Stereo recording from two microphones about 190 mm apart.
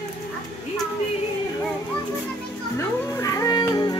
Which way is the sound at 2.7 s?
15° left (ahead or behind).